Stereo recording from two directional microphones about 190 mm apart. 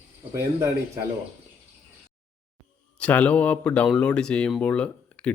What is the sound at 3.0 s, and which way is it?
Speech, 5° left (ahead or behind).